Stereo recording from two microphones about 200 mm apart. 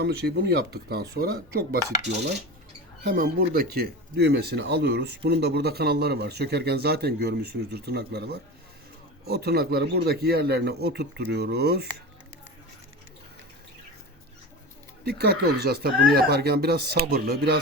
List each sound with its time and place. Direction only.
0.0 s speech: 55° right (ahead or behind)
3.0 s speech: 45° right (ahead or behind)
15.0 s speech: 50° right (ahead or behind)